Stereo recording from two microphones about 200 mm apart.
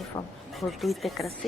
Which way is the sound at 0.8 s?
Centre (ahead or behind).